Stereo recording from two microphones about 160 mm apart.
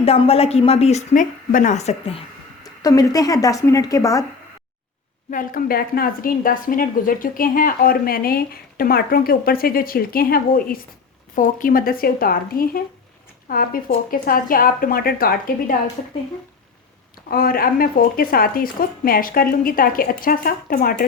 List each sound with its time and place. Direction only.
0.0 s speech: 40° left (ahead or behind)
2.8 s a woman's voice: 20° left (ahead or behind)
5.3 s a woman's voice: 60° left (ahead or behind)
17.2 s a woman's voice: 65° left (ahead or behind)